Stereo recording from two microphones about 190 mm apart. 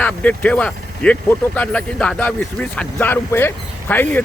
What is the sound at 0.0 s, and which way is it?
Speech, 5° left (ahead or behind).